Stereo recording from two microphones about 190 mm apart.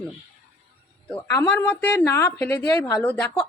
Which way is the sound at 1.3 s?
10° left (ahead or behind).